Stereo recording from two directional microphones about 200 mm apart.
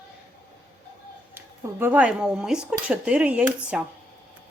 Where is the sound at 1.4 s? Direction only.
10° right (ahead or behind).